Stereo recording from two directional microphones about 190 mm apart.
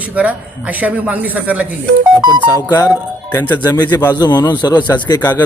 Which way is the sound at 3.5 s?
20° left (ahead or behind).